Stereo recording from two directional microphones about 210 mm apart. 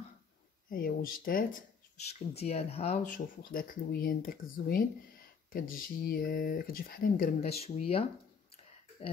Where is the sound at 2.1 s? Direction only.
30° left (ahead or behind).